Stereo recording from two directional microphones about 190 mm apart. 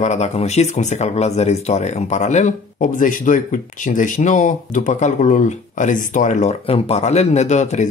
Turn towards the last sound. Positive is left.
turn(degrees=40)  # may be behind; listen again after turning